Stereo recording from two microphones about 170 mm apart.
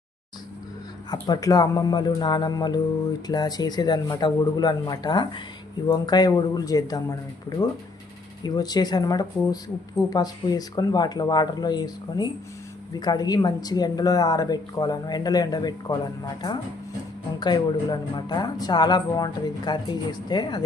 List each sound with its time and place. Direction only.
1.1 s speech: 20° left (ahead or behind)